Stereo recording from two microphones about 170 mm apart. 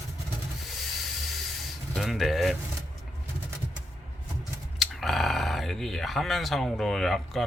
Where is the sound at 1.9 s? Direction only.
Centre (ahead or behind).